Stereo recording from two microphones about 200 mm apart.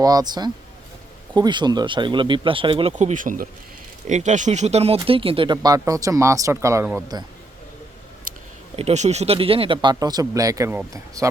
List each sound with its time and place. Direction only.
0.0 s speech: 20° right (ahead or behind)
8.3 s a sound: 45° right (ahead or behind)
8.7 s speech: 35° right (ahead or behind); by 11.3 s 15° right (ahead or behind)